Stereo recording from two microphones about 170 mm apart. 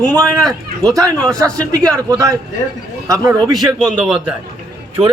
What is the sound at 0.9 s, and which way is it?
A man's voice, 20° right (ahead or behind).